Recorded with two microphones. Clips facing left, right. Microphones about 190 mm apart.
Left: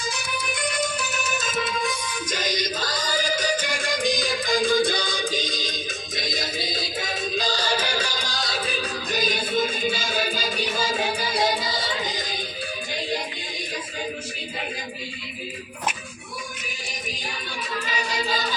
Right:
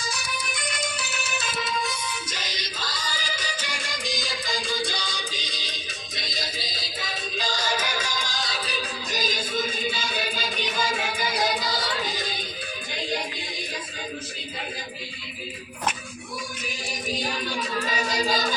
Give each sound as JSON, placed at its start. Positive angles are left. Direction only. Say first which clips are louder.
{"t": 0.9, "sound": "music", "louder": "left 4 dB", "side_deg": 45}
{"t": 17.8, "sound": "singing", "louder": "right 1 dB", "side_deg": -40}